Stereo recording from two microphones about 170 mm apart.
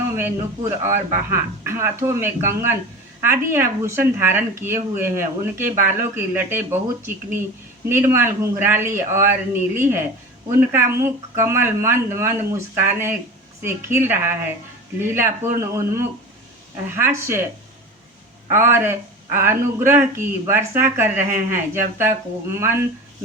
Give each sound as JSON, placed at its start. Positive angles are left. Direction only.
{"t": 0.2, "sound": "speech", "side_deg": -15}
{"t": 18.5, "sound": "speech", "side_deg": -15}